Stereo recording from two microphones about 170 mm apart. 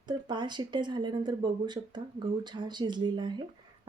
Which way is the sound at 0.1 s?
25° right (ahead or behind).